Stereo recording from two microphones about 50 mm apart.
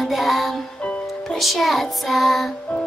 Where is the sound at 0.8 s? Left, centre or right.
Left.